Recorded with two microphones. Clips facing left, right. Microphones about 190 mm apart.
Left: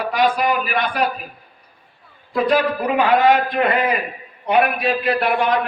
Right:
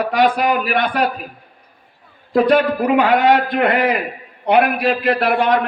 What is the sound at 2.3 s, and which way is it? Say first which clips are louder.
A man's voice: right 4 dB; 60° right (ahead or behind).